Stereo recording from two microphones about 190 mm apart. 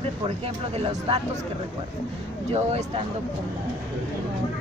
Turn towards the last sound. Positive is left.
turn(degrees=-35)  # may be behind; listen again after turning